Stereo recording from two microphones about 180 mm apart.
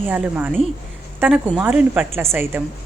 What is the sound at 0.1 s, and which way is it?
Speech, 5° right (ahead or behind).